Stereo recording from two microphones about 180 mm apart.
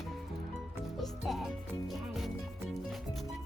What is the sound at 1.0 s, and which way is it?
Music, centre (ahead or behind).